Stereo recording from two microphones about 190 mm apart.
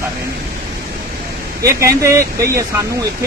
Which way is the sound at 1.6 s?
15° right (ahead or behind).